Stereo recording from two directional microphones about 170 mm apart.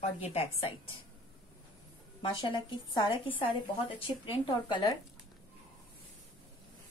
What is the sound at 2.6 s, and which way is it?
A woman's voice, 25° left (ahead or behind).